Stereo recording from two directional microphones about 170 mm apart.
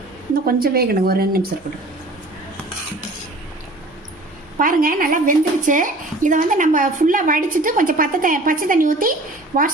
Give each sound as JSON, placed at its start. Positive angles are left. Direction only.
{"t": 0.4, "sound": "speech", "side_deg": -60}
{"t": 4.5, "sound": "a woman's voice", "side_deg": -55}